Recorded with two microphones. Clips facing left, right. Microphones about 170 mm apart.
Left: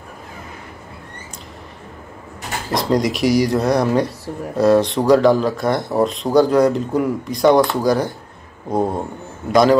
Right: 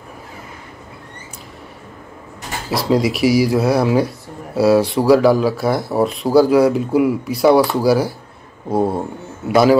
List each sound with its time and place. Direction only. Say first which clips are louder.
2.7 s speech: right 1 dB; 5° right (ahead or behind)